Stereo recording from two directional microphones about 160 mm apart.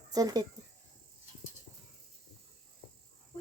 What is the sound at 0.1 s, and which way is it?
Speech, 25° right (ahead or behind).